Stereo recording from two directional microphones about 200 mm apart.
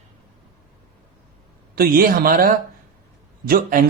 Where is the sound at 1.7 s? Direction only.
45° right (ahead or behind).